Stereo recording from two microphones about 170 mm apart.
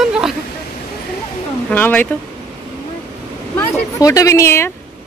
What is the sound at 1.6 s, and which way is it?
Speech, 10° left (ahead or behind).